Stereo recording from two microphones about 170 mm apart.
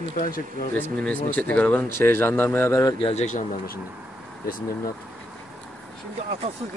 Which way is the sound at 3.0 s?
35° left (ahead or behind).